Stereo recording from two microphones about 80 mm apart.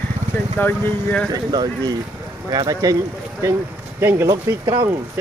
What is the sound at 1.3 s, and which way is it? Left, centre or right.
A man's voice, right.